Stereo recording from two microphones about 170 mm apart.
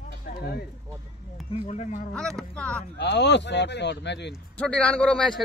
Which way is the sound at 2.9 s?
90° left.